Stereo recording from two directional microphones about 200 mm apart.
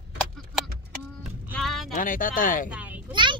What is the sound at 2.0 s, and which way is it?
Speech, 45° left (ahead or behind).